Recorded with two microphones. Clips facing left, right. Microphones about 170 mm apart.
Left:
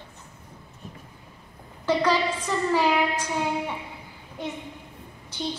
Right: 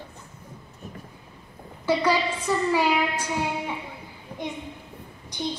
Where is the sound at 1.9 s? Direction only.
10° right (ahead or behind).